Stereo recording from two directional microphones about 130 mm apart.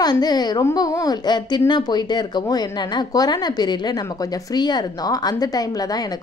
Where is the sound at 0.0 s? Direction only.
30° left (ahead or behind).